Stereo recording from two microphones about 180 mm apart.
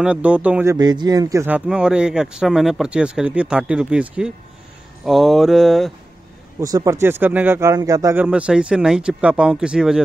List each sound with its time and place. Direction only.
0.0 s speech: 5° right (ahead or behind)
0.7 s speech: 25° right (ahead or behind)
1.7 s speech: 5° right (ahead or behind)
6.6 s speech: 20° right (ahead or behind)